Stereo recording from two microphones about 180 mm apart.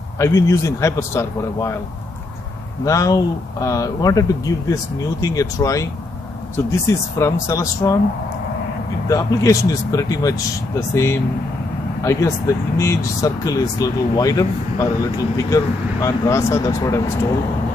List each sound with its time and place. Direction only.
0.2 s speech: 15° left (ahead or behind)
2.8 s speech: 20° left (ahead or behind)
9.1 s speech: 20° left (ahead or behind)